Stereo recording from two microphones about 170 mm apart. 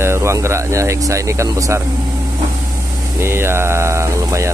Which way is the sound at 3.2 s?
15° right (ahead or behind).